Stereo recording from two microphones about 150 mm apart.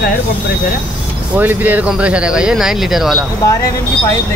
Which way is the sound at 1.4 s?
10° right (ahead or behind).